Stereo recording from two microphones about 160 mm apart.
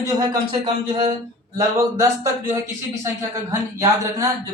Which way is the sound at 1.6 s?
20° right (ahead or behind).